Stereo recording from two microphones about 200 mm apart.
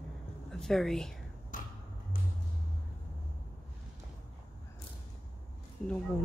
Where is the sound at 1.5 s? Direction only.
40° left (ahead or behind).